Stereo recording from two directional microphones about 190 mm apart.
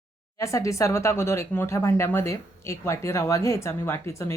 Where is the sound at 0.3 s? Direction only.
15° left (ahead or behind).